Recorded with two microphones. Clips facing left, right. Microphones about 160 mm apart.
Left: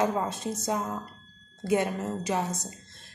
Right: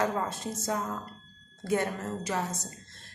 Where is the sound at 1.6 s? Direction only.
15° left (ahead or behind).